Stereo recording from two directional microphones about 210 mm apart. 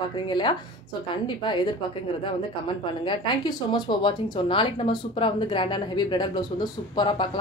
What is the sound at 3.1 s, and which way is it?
Speech, 20° left (ahead or behind).